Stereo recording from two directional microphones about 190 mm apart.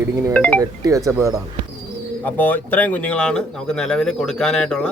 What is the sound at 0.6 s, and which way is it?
Speech, 15° right (ahead or behind).